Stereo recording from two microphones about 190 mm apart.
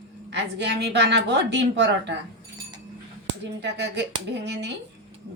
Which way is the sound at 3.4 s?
65° right (ahead or behind).